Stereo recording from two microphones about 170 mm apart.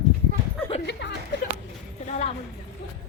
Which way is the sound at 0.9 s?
90° left.